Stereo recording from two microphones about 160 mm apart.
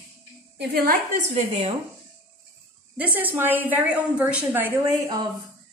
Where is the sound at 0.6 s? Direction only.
75° right (ahead or behind).